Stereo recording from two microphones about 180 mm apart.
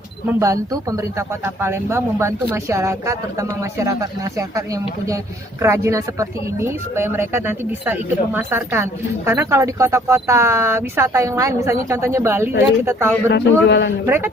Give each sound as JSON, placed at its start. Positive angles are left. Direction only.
{"t": 0.3, "sound": "speech", "side_deg": -15}
{"t": 13.3, "sound": "a man's voice", "side_deg": 70}
{"t": 14.0, "sound": "speech", "side_deg": -10}